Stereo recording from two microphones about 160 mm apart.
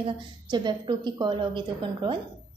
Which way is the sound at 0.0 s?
30° right (ahead or behind).